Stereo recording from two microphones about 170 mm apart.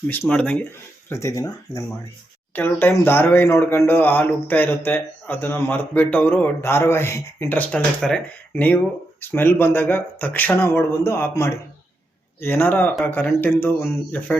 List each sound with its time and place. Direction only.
0.1 s speech: 10° left (ahead or behind)
1.1 s speech: 20° left (ahead or behind)